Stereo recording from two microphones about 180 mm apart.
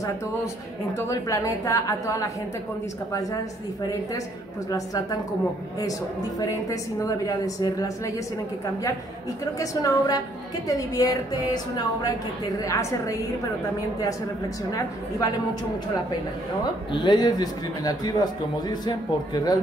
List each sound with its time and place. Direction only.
0.9 s a woman's voice: 15° left (ahead or behind)
4.6 s a man's voice: 20° left (ahead or behind)
9.6 s a man's voice: 20° left (ahead or behind)
14.7 s a man's voice: 20° left (ahead or behind)
16.9 s a man's voice: 25° left (ahead or behind)